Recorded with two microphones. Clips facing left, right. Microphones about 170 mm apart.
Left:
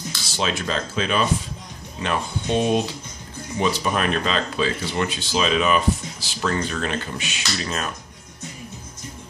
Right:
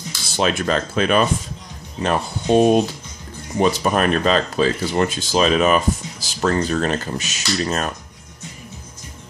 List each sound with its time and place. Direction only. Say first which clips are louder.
0.4 s speech: right 5 dB; 55° right (ahead or behind)
2.0 s speech: right 4 dB; 40° right (ahead or behind)